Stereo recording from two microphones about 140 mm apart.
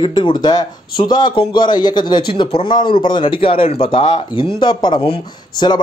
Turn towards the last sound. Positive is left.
turn(degrees=35)  # may be behind; listen again after turning